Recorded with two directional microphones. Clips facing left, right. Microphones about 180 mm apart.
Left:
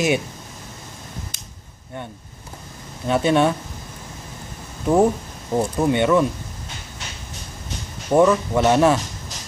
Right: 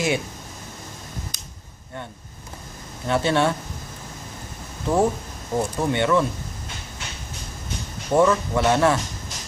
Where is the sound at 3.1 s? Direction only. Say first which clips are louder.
Left 3 dB; 20° left (ahead or behind).